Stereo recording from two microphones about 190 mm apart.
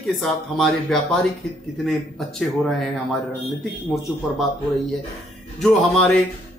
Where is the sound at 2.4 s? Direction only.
Centre (ahead or behind).